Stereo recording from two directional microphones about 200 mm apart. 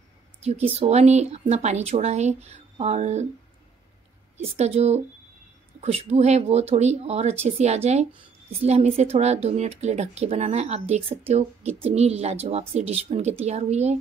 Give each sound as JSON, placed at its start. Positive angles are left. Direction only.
{"t": 0.4, "sound": "a woman's voice", "side_deg": -30}
{"t": 4.4, "sound": "a woman's voice", "side_deg": -30}